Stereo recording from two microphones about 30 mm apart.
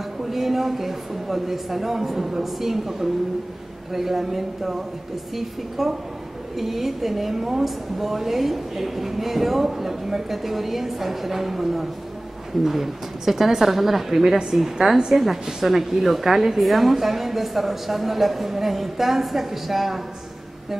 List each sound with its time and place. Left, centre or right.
0.2 s a woman's voice: centre
15.0 s a woman's voice: right
15.6 s a woman's voice: centre